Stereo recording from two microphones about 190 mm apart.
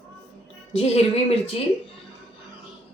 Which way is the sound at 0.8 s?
35° left (ahead or behind).